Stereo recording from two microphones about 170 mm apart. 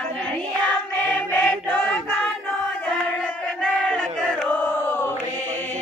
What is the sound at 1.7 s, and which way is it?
Choir, 10° left (ahead or behind).